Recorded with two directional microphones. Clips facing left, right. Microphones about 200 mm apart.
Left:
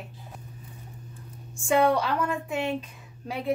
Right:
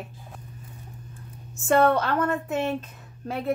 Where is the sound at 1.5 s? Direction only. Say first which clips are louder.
Right 2 dB; centre (ahead or behind).